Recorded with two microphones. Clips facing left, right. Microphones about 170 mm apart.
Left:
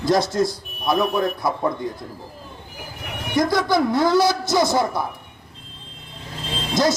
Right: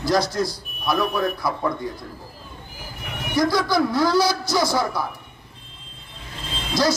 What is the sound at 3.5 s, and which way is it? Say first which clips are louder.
Speech: left 2 dB; 20° left (ahead or behind).